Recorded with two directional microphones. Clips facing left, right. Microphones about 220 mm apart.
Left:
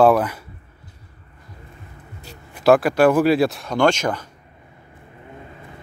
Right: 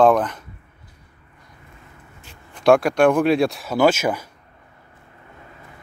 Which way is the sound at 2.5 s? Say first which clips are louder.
Even; 5° left (ahead or behind).